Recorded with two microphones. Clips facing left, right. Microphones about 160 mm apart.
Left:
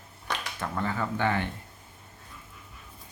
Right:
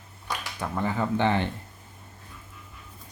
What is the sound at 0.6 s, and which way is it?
Speech, 15° right (ahead or behind).